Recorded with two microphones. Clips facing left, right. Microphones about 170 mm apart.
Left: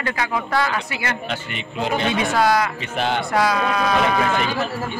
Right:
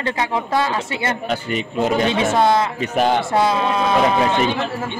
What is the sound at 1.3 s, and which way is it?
Speech, 40° right (ahead or behind).